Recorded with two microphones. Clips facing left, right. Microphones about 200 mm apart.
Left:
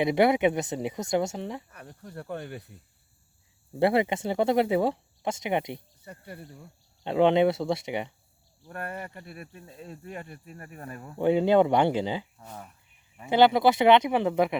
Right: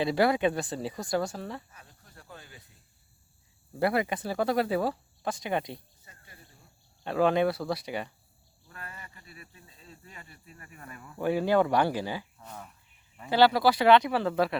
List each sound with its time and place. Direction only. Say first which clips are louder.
0.0 s speech: left 3 dB; 20° left (ahead or behind)
1.7 s speech: left 13 dB; 60° left (ahead or behind)
3.8 s speech: left 4 dB; 25° left (ahead or behind)
6.1 s speech: left 14 dB; 60° left (ahead or behind)
7.0 s speech: left 4 dB; 20° left (ahead or behind)
8.6 s speech: left 11 dB; 60° left (ahead or behind); by 11.2 s 40° left (ahead or behind)
11.2 s speech: left 4 dB; 20° left (ahead or behind)